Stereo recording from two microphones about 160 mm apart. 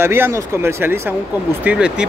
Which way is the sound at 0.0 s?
15° right (ahead or behind).